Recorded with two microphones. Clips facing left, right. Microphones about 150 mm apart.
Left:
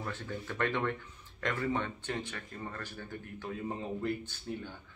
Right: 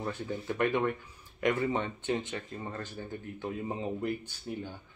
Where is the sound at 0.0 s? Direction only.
15° right (ahead or behind).